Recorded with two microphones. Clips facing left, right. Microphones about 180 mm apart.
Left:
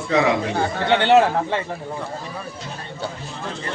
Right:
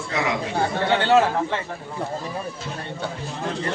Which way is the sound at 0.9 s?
25° left (ahead or behind).